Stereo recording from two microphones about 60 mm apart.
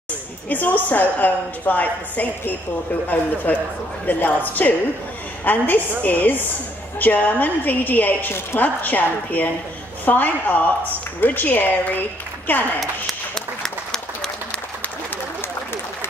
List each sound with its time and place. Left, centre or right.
0.5 s a woman's voice: left
12.8 s applause: centre
15.4 s a sound: left